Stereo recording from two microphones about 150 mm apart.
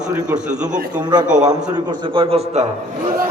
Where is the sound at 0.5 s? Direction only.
55° right (ahead or behind).